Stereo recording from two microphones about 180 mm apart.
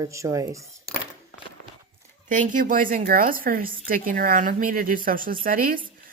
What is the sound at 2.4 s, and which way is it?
A woman's voice, 45° right (ahead or behind).